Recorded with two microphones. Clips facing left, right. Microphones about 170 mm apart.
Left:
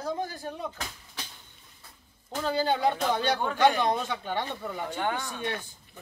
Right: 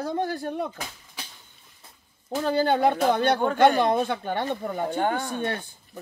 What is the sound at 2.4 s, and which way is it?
Speech, 55° right (ahead or behind).